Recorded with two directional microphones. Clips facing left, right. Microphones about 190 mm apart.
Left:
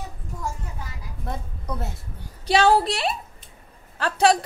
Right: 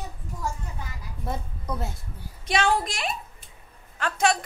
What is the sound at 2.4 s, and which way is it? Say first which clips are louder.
A woman's voice: left 6 dB; 35° left (ahead or behind).